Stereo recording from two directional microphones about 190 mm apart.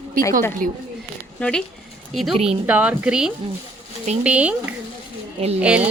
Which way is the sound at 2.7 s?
5° right (ahead or behind).